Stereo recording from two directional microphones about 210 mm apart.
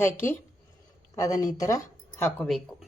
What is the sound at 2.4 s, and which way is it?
Speech, centre (ahead or behind).